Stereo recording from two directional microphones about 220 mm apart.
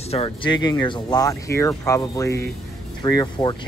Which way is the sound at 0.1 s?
25° left (ahead or behind).